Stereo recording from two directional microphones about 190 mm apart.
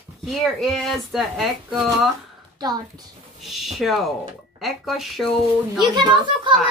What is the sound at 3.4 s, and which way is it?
Speech, centre (ahead or behind).